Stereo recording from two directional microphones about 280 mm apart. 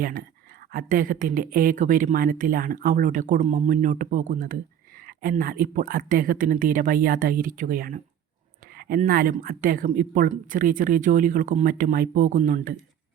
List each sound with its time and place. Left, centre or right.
0.0 s speech: right